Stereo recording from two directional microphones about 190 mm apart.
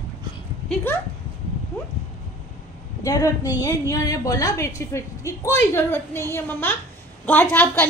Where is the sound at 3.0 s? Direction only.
20° left (ahead or behind).